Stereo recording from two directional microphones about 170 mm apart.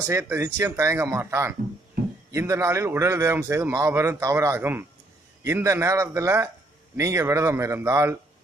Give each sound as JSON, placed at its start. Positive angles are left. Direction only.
{"t": 0.0, "sound": "a man's voice", "side_deg": -15}